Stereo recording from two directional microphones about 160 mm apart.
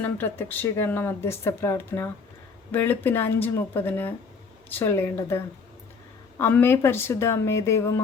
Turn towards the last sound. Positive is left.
turn(degrees=15)  # may be behind; listen again after turning